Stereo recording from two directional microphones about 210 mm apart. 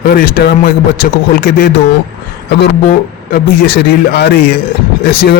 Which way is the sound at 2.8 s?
45° left (ahead or behind).